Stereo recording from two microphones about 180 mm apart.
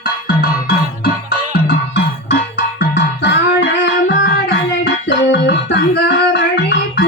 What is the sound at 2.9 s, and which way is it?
Music, 80° left.